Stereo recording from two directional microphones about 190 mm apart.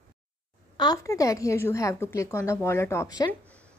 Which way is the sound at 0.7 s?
20° left (ahead or behind).